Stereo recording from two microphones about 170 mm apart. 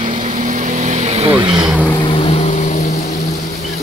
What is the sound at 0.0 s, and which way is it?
Vehicle, 40° right (ahead or behind).